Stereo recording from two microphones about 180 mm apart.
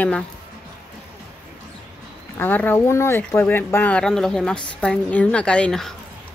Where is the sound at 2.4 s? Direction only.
10° left (ahead or behind).